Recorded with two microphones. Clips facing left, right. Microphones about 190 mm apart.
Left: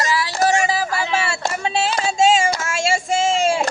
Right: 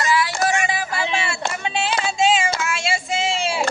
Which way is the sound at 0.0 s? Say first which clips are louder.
Left 1 dB; 35° left (ahead or behind).